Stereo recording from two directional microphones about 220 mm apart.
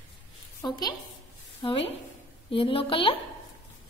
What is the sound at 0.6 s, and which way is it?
A woman's voice, 20° left (ahead or behind).